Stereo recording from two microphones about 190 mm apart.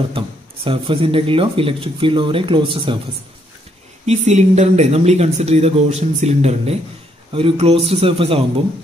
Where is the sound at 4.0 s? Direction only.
35° right (ahead or behind).